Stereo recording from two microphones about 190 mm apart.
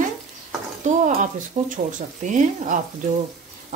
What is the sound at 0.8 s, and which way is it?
Speech, 40° right (ahead or behind).